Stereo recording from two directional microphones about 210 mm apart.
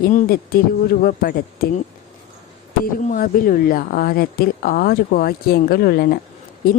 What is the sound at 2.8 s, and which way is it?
Speech, 40° left (ahead or behind).